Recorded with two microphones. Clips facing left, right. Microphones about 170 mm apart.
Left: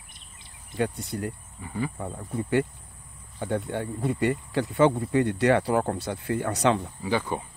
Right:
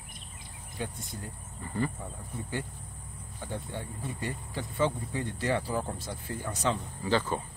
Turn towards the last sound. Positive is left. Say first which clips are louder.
# left 1 dB
turn(degrees=15)  # may be behind; listen again after turning